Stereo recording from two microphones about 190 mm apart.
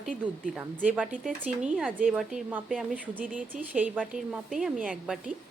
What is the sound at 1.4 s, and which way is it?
A woman's voice, 5° right (ahead or behind).